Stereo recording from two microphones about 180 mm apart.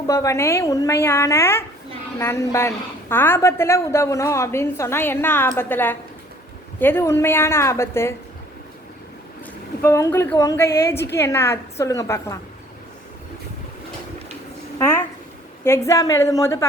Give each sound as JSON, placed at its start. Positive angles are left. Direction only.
{"t": 0.1, "sound": "a woman's voice", "side_deg": 15}
{"t": 9.8, "sound": "a woman's voice", "side_deg": 15}
{"t": 14.8, "sound": "a sound", "side_deg": 15}
{"t": 15.6, "sound": "a woman's voice", "side_deg": 15}